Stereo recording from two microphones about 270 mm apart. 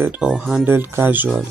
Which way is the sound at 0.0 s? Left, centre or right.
Centre.